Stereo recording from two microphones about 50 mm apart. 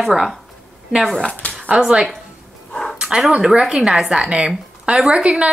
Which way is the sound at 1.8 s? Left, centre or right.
Centre.